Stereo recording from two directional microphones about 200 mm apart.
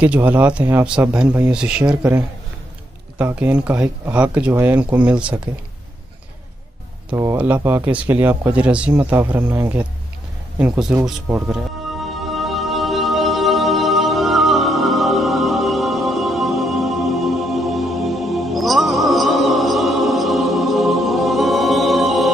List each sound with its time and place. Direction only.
0.0 s speech: 10° right (ahead or behind)
7.1 s speech: 10° right (ahead or behind)
12.0 s music: centre (ahead or behind)